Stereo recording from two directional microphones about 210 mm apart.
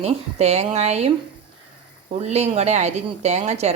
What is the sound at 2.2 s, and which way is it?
Speech, 30° right (ahead or behind).